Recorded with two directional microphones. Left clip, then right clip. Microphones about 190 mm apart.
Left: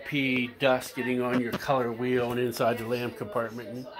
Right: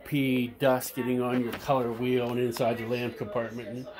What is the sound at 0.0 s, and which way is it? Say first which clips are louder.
Speech: left 1 dB; 30° right (ahead or behind).